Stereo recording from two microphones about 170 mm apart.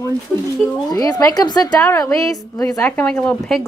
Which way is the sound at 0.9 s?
20° left (ahead or behind).